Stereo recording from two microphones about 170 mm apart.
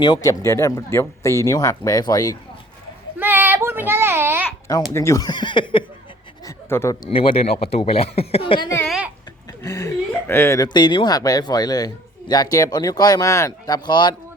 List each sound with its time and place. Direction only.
0.0 s speech: 25° left (ahead or behind)
3.2 s child singing: 10° right (ahead or behind)
4.9 s speech: 20° left (ahead or behind)
6.4 s speech: 15° left (ahead or behind)
7.1 s speech: 35° left (ahead or behind)
8.8 s a sound: 5° right (ahead or behind)
9.5 s speech: 20° left (ahead or behind)